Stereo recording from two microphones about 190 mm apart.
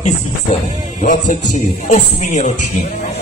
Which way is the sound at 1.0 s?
40° left (ahead or behind).